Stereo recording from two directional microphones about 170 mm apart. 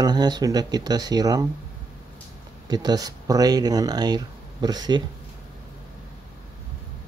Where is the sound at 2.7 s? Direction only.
25° right (ahead or behind).